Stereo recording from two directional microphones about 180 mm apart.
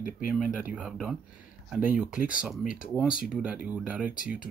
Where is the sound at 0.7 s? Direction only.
5° right (ahead or behind).